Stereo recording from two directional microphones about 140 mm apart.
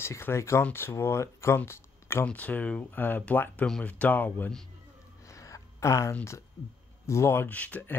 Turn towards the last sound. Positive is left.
turn(degrees=10)  # may be behind; listen again after turning